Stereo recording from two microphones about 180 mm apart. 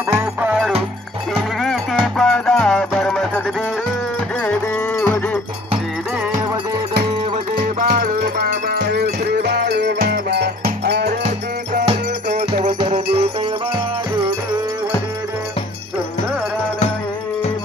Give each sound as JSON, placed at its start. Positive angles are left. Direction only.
{"t": 0.2, "sound": "music", "side_deg": -10}
{"t": 1.3, "sound": "sheep", "side_deg": 0}
{"t": 2.1, "sound": "music", "side_deg": 0}
{"t": 7.6, "sound": "music", "side_deg": -55}
{"t": 11.2, "sound": "music", "side_deg": -40}
{"t": 12.8, "sound": "music", "side_deg": -35}